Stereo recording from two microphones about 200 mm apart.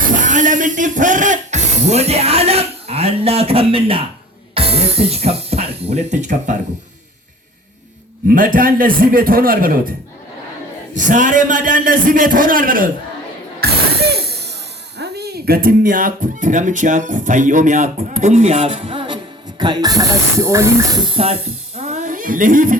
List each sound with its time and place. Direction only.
0.1 s speech: 40° right (ahead or behind)
8.3 s a man's voice: 45° right (ahead or behind)
10.9 s speech: 40° right (ahead or behind)
13.6 s ratchet: 55° right (ahead or behind)
14.9 s speech: 55° right (ahead or behind)